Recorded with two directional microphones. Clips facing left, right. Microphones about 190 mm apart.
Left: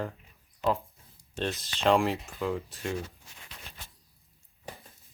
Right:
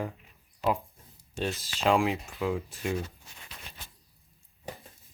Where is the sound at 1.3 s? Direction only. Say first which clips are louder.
Even; 5° right (ahead or behind).